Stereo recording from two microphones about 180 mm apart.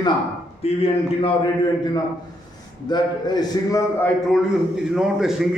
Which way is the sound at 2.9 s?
25° left (ahead or behind).